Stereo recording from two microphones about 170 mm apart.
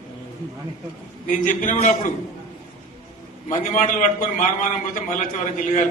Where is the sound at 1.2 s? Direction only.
50° left (ahead or behind).